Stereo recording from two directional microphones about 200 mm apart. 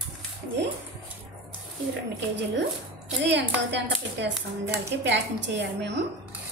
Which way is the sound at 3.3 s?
60° right (ahead or behind).